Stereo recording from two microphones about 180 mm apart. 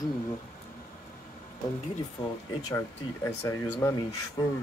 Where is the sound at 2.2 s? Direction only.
30° left (ahead or behind).